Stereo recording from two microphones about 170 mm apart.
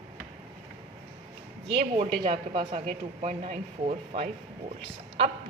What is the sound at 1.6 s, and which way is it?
Speech, 35° right (ahead or behind).